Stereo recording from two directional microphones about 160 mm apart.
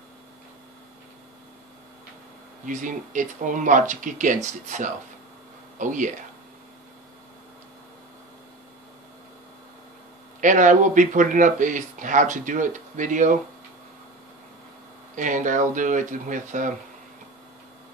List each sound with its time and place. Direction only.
2.6 s speech: 55° right (ahead or behind)
10.4 s speech: 55° right (ahead or behind)
15.1 s speech: 50° right (ahead or behind)